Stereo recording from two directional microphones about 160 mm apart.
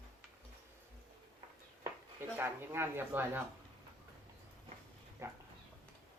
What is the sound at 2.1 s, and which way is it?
Speech, 15° right (ahead or behind).